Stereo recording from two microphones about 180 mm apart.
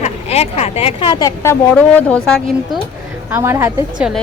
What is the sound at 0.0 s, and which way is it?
Speech, 35° left (ahead or behind).